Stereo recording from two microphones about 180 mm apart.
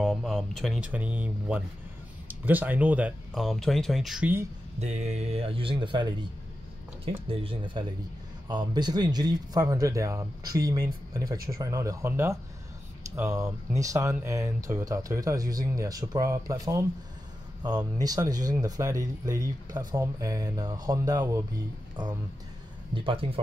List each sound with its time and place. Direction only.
0.0 s speech: centre (ahead or behind)
0.8 s speech: 10° right (ahead or behind)
4.7 s speech: 40° right (ahead or behind); by 6.2 s 25° right (ahead or behind)
7.2 s speech: 30° right (ahead or behind)
22.9 s speech: 30° right (ahead or behind)